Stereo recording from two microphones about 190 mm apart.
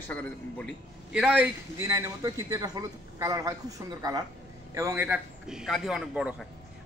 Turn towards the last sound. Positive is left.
turn(degrees=-5)  # may be behind; listen again after turning